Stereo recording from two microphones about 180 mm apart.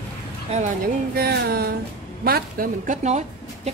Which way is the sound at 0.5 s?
35° right (ahead or behind).